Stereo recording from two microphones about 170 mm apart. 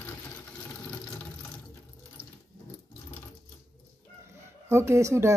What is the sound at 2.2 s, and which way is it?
Water, 30° right (ahead or behind).